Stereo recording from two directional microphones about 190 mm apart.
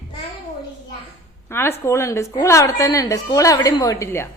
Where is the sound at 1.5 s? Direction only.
10° left (ahead or behind).